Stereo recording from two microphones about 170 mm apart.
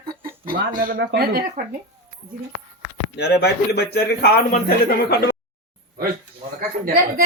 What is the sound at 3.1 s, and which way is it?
A man's voice, 80° left.